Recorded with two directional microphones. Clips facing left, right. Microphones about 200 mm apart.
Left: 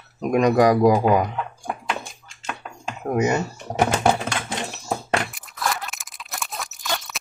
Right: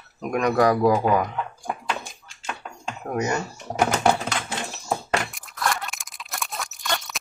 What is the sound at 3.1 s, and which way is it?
Speech, 20° left (ahead or behind).